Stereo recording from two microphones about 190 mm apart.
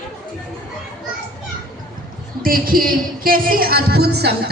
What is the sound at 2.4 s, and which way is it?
Speech, 50° right (ahead or behind).